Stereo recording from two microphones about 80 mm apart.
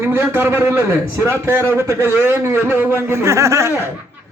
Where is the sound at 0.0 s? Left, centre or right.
Right.